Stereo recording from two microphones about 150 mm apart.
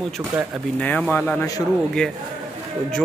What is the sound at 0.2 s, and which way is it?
Speech, 20° right (ahead or behind).